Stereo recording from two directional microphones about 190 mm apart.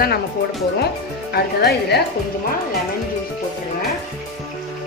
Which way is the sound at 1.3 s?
60° left (ahead or behind).